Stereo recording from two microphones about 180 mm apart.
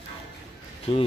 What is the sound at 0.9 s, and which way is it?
Speech, 30° left (ahead or behind).